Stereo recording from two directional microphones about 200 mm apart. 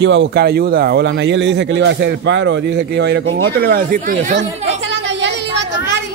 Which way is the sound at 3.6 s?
45° right (ahead or behind).